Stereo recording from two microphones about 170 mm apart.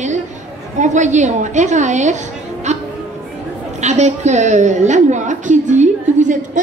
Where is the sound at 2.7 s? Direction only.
40° right (ahead or behind).